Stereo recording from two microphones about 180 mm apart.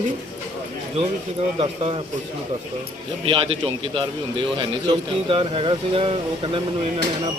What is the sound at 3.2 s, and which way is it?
Speech, 30° right (ahead or behind).